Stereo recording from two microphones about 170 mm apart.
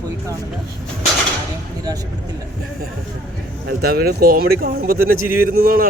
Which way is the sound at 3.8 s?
65° right (ahead or behind).